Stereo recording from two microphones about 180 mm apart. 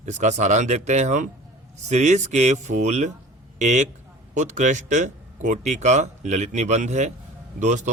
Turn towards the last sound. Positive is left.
turn(degrees=-40)  # may be behind; listen again after turning